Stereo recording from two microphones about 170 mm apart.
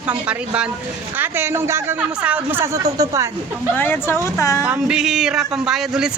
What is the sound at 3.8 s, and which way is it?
Speech, 10° left (ahead or behind).